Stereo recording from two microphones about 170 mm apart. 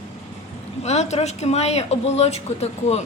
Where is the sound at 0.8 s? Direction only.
40° left (ahead or behind).